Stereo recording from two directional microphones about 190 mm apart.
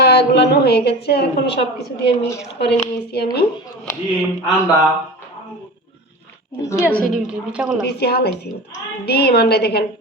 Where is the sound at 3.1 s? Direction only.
60° left (ahead or behind).